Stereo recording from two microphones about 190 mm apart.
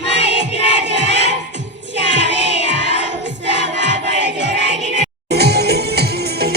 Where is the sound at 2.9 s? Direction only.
65° right (ahead or behind).